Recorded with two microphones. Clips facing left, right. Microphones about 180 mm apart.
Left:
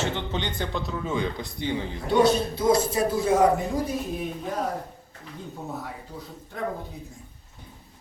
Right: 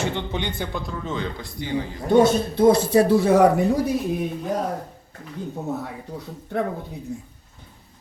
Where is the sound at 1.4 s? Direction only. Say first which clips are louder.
Left 2 dB; 20° left (ahead or behind).